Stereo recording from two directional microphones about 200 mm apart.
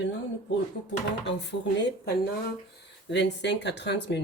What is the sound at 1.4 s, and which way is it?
Speech, 60° left (ahead or behind).